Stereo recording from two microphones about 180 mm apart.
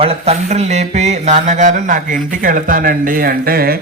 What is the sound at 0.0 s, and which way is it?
Speech, 35° right (ahead or behind).